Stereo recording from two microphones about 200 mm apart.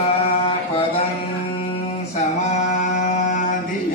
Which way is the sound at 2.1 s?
35° left (ahead or behind).